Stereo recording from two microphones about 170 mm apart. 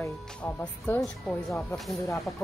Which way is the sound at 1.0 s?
Centre (ahead or behind).